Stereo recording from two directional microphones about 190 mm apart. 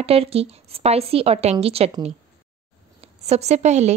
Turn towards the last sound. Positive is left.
turn(degrees=-35)  # may be behind; listen again after turning